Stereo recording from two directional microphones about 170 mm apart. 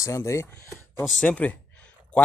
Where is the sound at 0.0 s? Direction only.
15° left (ahead or behind).